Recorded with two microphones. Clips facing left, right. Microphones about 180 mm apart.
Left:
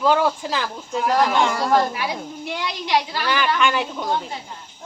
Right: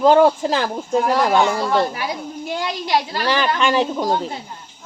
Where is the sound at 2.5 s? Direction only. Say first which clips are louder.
Right 2 dB; 40° right (ahead or behind).